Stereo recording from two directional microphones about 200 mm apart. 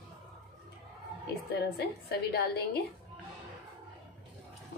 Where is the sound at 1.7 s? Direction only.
50° left (ahead or behind).